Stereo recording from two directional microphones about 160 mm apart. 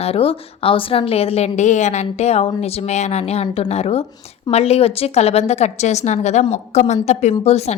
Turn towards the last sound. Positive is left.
turn(degrees=40)  # may be behind; listen again after turning